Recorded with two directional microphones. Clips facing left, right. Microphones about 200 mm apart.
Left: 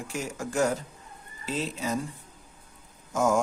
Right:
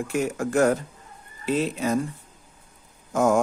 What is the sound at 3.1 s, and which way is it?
Speech, 55° right (ahead or behind).